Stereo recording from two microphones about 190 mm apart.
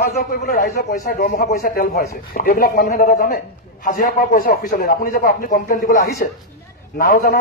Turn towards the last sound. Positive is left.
turn(degrees=55)  # may be behind; listen again after turning